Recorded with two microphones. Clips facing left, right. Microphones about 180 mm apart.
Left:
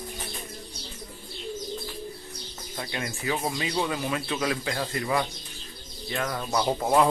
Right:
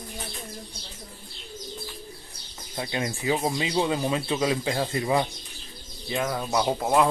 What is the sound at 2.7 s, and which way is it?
Speech, 20° right (ahead or behind).